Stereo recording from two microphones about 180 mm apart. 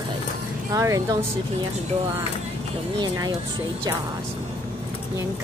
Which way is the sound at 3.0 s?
20° right (ahead or behind).